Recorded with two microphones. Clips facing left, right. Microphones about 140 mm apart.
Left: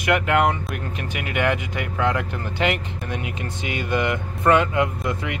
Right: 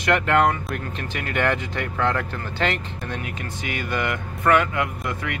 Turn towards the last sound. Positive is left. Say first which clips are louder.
# left 2 dB
turn(degrees=20)  # may be behind; listen again after turning